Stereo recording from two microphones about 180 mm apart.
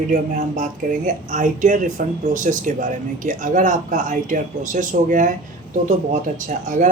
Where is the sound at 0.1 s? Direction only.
45° right (ahead or behind).